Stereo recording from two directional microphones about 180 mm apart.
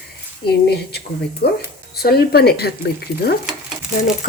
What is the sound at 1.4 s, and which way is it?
Speech, 60° left (ahead or behind).